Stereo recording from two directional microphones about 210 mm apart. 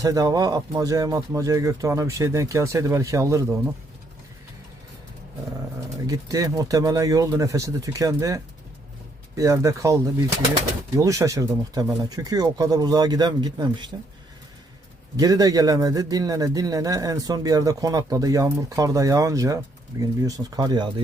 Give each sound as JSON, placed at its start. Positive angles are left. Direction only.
{"t": 0.0, "sound": "a man's voice", "side_deg": -15}
{"t": 6.1, "sound": "a man's voice", "side_deg": -15}
{"t": 15.1, "sound": "a man's voice", "side_deg": -15}